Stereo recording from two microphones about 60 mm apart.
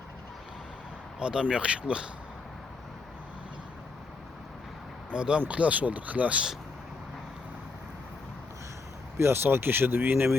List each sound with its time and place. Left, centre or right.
1.2 s speech: centre
5.1 s speech: centre
9.1 s speech: right